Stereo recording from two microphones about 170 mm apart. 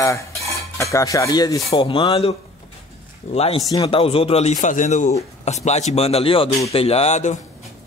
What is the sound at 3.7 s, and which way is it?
Speech, 30° left (ahead or behind).